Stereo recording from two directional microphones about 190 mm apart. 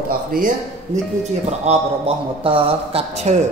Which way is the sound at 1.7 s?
30° right (ahead or behind).